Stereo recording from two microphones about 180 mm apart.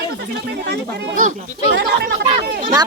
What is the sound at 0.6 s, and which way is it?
Speech, 70° right (ahead or behind).